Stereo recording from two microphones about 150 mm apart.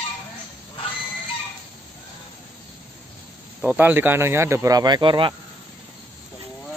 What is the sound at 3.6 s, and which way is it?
Speech, 10° right (ahead or behind).